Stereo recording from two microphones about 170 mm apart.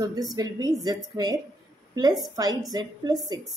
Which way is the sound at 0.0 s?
20° right (ahead or behind).